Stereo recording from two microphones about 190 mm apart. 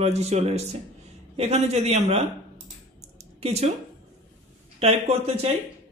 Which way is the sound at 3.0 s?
35° right (ahead or behind).